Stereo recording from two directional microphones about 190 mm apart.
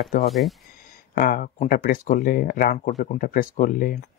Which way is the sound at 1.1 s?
45° left (ahead or behind).